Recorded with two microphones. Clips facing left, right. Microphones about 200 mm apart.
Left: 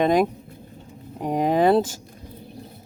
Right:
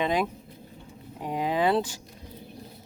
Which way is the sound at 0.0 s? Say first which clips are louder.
Left 7 dB; 45° left (ahead or behind).